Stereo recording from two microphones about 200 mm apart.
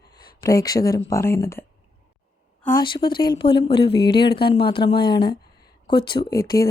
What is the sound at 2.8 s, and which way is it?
Speech, 25° left (ahead or behind).